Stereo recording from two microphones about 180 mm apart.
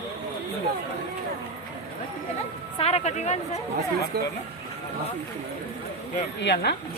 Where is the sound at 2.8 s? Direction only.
35° left (ahead or behind).